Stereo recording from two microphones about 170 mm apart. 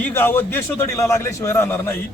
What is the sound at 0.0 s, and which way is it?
A man's voice, 10° left (ahead or behind).